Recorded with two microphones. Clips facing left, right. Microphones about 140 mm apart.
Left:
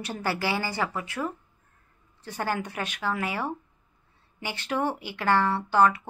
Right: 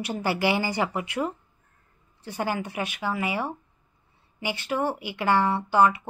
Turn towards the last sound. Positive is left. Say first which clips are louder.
# right 1 dB
turn(degrees=-10)  # may be behind; listen again after turning